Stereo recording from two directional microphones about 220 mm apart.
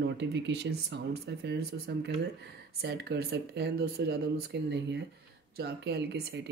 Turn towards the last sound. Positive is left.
turn(degrees=-50)  # may be behind; listen again after turning